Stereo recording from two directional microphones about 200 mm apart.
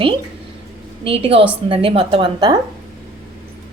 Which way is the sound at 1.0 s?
25° right (ahead or behind).